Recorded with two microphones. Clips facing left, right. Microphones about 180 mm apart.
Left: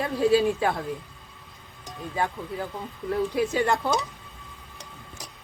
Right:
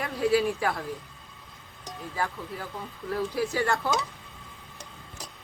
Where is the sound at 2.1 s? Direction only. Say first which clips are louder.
Left 4 dB; 20° left (ahead or behind).